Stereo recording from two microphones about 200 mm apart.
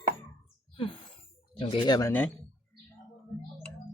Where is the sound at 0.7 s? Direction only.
25° left (ahead or behind).